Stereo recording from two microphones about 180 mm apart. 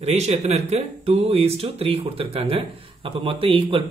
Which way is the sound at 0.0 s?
35° right (ahead or behind).